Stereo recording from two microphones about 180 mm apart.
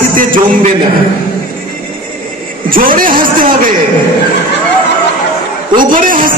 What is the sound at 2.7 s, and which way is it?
A man's voice, 50° right (ahead or behind).